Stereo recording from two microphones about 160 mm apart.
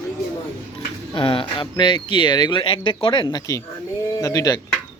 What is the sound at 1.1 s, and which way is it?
Speech, 35° left (ahead or behind).